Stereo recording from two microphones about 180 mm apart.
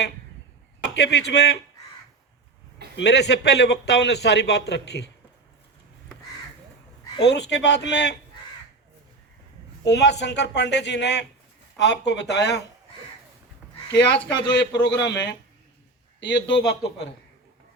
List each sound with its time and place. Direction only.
1.0 s a man's voice: 70° left (ahead or behind)
2.9 s a man's voice: 70° left (ahead or behind)
7.3 s a man's voice: 70° left (ahead or behind)
9.8 s a man's voice: 70° left (ahead or behind)
13.9 s a man's voice: 80° left
16.2 s speech: 80° left